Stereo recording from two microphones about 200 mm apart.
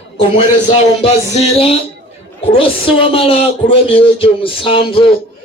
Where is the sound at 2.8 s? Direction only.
25° left (ahead or behind).